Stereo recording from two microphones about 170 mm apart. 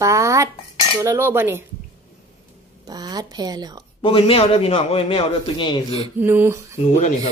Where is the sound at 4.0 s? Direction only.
30° left (ahead or behind).